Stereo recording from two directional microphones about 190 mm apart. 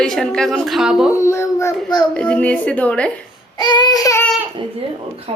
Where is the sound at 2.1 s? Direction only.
5° left (ahead or behind).